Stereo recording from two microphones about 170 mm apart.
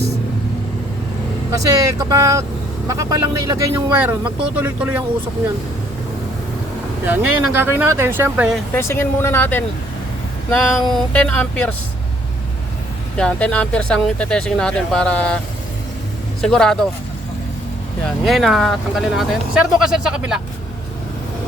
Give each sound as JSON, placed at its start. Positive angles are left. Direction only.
{"t": 1.5, "sound": "speech", "side_deg": -20}
{"t": 7.0, "sound": "speech", "side_deg": -10}
{"t": 8.7, "sound": "a sound", "side_deg": 15}
{"t": 13.1, "sound": "speech", "side_deg": 5}
{"t": 16.4, "sound": "speech", "side_deg": 5}
{"t": 18.3, "sound": "speech", "side_deg": 0}